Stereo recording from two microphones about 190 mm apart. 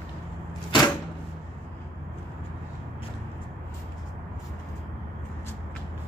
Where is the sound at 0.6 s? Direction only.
25° left (ahead or behind).